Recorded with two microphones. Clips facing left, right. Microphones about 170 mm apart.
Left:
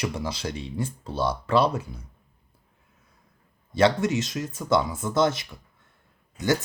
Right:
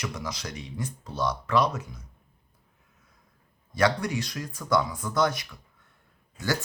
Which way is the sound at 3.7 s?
25° left (ahead or behind).